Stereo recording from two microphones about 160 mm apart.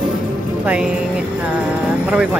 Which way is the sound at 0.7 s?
5° right (ahead or behind).